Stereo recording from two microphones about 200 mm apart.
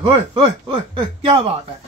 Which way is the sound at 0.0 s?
25° right (ahead or behind).